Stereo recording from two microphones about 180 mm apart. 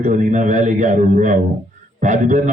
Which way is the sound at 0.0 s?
45° right (ahead or behind).